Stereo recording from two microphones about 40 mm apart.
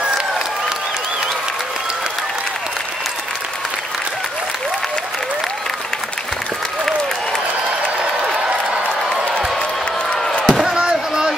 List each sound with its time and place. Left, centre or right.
10.2 s slam: centre
10.7 s slam: right